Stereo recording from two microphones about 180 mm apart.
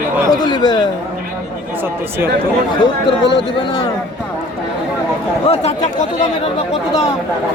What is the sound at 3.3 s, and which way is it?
Speech, 30° left (ahead or behind).